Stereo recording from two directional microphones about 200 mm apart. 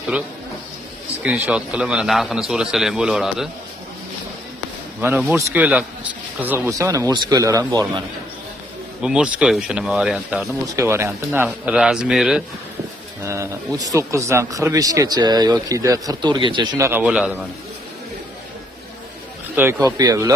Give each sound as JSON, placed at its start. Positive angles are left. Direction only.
{"t": 1.2, "sound": "speech", "side_deg": -5}
{"t": 5.0, "sound": "speech", "side_deg": -10}
{"t": 9.0, "sound": "speech", "side_deg": -5}
{"t": 13.2, "sound": "speech", "side_deg": -15}
{"t": 19.5, "sound": "speech", "side_deg": -10}